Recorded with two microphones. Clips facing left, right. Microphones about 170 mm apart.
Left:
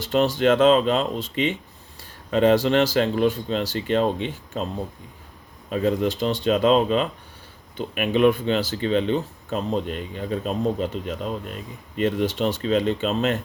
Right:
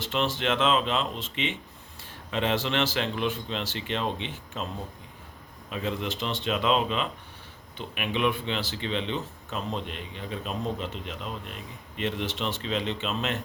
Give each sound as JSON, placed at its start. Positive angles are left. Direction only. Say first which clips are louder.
{"t": 0.0, "sound": "speech", "louder": "left 9 dB", "side_deg": 40}
{"t": 5.7, "sound": "speech", "louder": "left 9 dB", "side_deg": 40}